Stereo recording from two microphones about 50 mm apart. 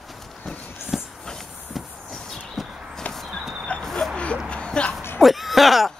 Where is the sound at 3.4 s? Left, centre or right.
Centre.